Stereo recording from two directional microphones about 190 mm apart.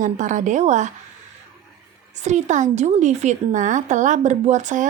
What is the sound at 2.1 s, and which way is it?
A woman's voice, 40° right (ahead or behind).